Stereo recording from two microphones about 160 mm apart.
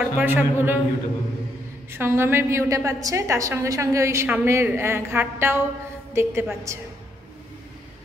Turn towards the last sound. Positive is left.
turn(degrees=-20)  # may be behind; listen again after turning